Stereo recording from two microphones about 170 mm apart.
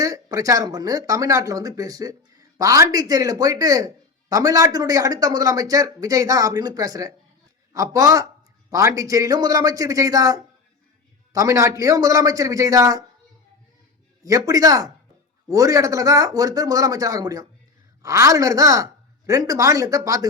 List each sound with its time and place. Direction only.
0.0 s speech: 20° right (ahead or behind)
14.3 s speech: 20° right (ahead or behind)